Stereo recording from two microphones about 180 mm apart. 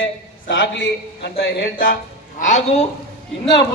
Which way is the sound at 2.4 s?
40° left (ahead or behind).